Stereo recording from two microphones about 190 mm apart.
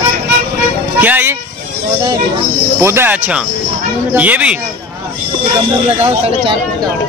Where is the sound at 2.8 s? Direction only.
15° right (ahead or behind).